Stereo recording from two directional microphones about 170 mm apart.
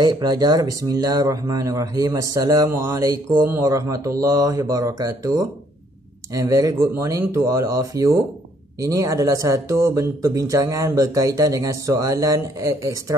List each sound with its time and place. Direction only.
0.0 s speech: 25° right (ahead or behind)